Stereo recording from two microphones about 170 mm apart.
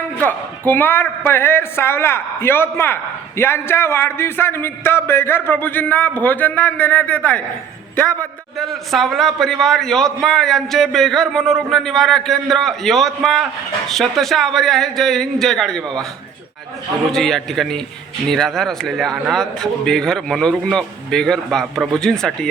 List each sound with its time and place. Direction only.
0.2 s a man's voice: 10° left (ahead or behind)
17.1 s a man's voice: centre (ahead or behind)